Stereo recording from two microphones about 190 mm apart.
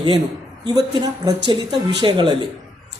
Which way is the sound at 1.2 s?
25° right (ahead or behind).